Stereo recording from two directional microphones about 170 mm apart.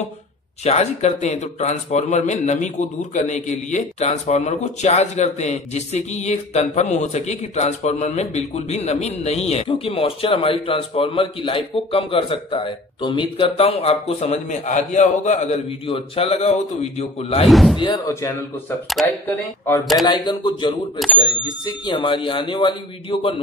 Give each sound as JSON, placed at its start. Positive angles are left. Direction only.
{"t": 0.7, "sound": "a man's voice", "side_deg": 40}
{"t": 17.5, "sound": "speech", "side_deg": 0}
{"t": 17.7, "sound": "speech", "side_deg": 25}
{"t": 18.9, "sound": "speech", "side_deg": 0}
{"t": 20.1, "sound": "speech", "side_deg": 25}
{"t": 21.8, "sound": "speech", "side_deg": 30}